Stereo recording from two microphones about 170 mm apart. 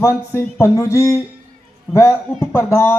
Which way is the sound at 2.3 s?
5° left (ahead or behind).